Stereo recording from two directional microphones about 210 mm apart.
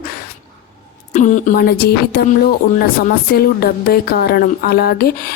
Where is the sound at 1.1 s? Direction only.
35° left (ahead or behind).